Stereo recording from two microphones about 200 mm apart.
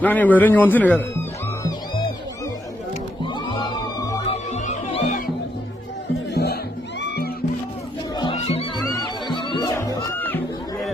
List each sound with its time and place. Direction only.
0.0 s a man's voice: 10° left (ahead or behind)
3.3 s music: 20° left (ahead or behind)
4.5 s music: 35° left (ahead or behind)
6.3 s music: 55° left (ahead or behind)
8.1 s music: 25° left (ahead or behind); by 10.4 s 10° left (ahead or behind)